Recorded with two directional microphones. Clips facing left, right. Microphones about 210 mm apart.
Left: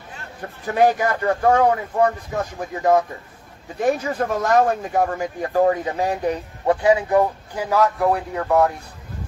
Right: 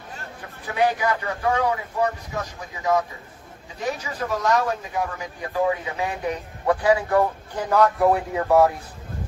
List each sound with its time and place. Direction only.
0.7 s speech: 45° left (ahead or behind)
6.6 s speech: 25° left (ahead or behind)
7.7 s speech: centre (ahead or behind)